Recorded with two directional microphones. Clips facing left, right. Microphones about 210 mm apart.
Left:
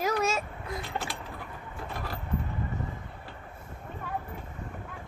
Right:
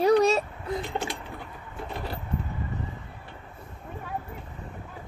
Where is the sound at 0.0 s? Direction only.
35° right (ahead or behind).